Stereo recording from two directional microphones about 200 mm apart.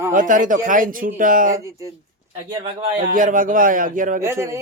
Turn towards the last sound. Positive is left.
turn(degrees=-15)  # may be behind; listen again after turning